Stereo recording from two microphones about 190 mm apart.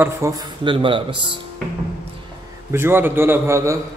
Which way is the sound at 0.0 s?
15° right (ahead or behind).